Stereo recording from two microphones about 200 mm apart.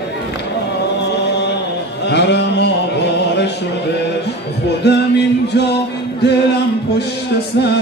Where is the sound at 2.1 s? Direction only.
60° left (ahead or behind).